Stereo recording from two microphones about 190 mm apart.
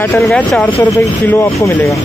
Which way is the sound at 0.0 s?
10° left (ahead or behind).